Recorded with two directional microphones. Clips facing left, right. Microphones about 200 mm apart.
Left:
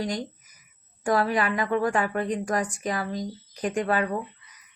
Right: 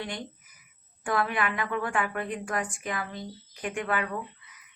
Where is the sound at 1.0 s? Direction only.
35° left (ahead or behind).